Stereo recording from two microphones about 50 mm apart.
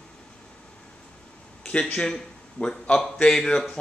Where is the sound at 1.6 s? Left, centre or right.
Left.